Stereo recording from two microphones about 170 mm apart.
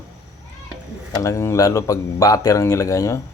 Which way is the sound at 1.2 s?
15° left (ahead or behind).